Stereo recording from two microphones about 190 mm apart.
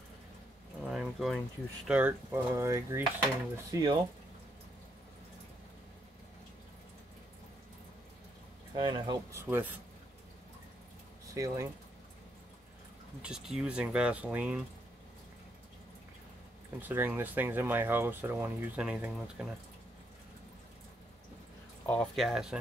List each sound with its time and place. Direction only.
0.8 s a sound: centre (ahead or behind)
1.9 s speech: 10° right (ahead or behind)
8.7 s speech: 25° right (ahead or behind)
9.3 s speech: 10° right (ahead or behind)
11.3 s speech: 15° right (ahead or behind)
13.2 s speech: 5° right (ahead or behind)
16.8 s speech: 10° right (ahead or behind)
21.8 s speech: 5° left (ahead or behind)